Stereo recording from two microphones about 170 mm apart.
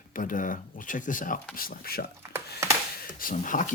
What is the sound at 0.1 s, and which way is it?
Speech, 50° left (ahead or behind).